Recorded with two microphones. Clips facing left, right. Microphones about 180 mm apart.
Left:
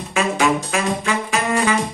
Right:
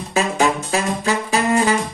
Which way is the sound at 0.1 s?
35° right (ahead or behind).